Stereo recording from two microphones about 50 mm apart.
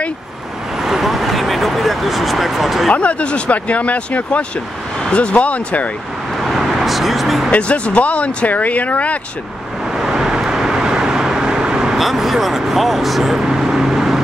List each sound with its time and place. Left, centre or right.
0.7 s a sound: centre
2.9 s speech: left
6.4 s vehicle: centre
7.5 s speech: left
9.9 s vehicle: centre
12.0 s speech: centre